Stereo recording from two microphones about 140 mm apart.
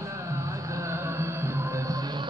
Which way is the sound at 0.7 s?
20° right (ahead or behind).